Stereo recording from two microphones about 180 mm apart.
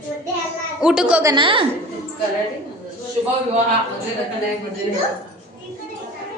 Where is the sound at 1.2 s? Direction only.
25° right (ahead or behind).